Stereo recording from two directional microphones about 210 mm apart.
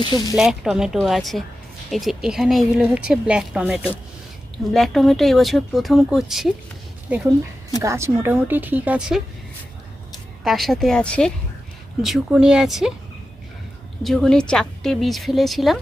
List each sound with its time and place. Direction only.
0.0 s speech: 20° left (ahead or behind)
0.3 s speech: centre (ahead or behind)
7.8 s speech: 15° right (ahead or behind)
10.4 s speech: centre (ahead or behind)
14.0 s speech: centre (ahead or behind)